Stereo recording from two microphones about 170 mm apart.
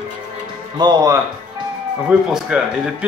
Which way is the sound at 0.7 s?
25° right (ahead or behind).